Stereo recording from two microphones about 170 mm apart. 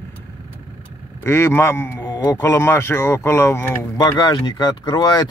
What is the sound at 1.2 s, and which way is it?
A man's voice, 15° left (ahead or behind).